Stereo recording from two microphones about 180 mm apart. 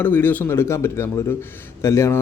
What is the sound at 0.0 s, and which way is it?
Speech, 10° left (ahead or behind).